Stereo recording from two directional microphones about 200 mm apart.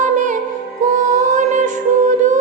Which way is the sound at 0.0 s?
40° right (ahead or behind).